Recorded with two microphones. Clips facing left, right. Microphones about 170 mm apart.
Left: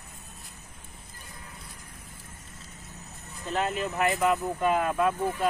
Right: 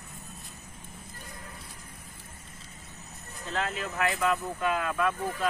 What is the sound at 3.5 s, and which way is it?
Speech, 15° left (ahead or behind).